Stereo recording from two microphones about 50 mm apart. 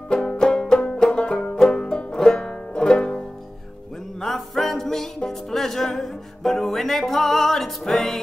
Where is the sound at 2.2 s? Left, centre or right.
Centre.